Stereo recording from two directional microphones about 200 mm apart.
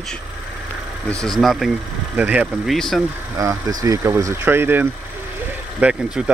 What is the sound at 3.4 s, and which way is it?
Speech, 15° right (ahead or behind).